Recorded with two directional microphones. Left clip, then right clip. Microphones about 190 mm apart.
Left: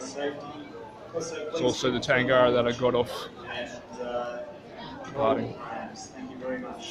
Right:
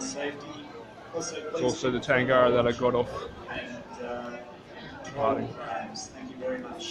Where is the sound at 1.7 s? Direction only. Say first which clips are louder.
Even; centre (ahead or behind).